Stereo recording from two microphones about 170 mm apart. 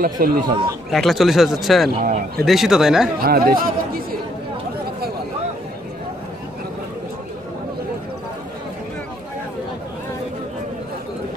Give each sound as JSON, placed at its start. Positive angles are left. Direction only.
{"t": 0.0, "sound": "speech", "side_deg": -55}
{"t": 0.9, "sound": "speech", "side_deg": 0}
{"t": 2.0, "sound": "speech", "side_deg": -55}
{"t": 2.4, "sound": "speech", "side_deg": 0}
{"t": 3.2, "sound": "speech", "side_deg": -60}